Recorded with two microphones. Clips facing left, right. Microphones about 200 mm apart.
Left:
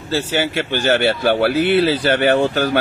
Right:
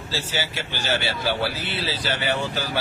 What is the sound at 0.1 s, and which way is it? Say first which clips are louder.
Speech: left 10 dB; 55° left (ahead or behind).